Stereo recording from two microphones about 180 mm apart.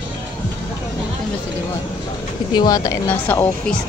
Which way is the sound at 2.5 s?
20° left (ahead or behind).